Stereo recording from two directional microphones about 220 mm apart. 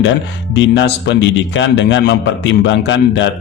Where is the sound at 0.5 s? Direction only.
50° left (ahead or behind).